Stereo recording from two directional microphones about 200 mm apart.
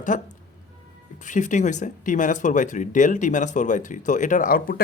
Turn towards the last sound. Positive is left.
turn(degrees=45)  # may be behind; listen again after turning